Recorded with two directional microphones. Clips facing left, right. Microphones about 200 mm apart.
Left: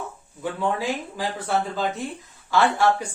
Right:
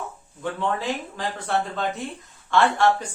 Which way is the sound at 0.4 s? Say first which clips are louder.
Left 1 dB; 5° left (ahead or behind).